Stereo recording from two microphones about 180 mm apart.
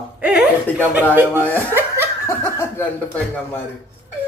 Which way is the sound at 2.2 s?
15° left (ahead or behind).